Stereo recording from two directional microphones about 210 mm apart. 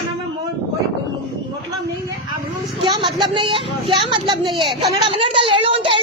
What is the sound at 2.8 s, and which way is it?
A child's voice, 20° right (ahead or behind).